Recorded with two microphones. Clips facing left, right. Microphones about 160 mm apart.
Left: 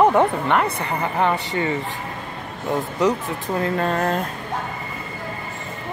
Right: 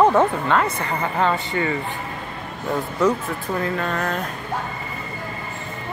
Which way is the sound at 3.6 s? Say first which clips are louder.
Left 5 dB; 35° left (ahead or behind).